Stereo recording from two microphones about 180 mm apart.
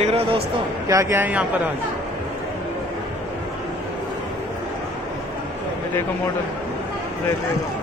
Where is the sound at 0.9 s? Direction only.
15° right (ahead or behind).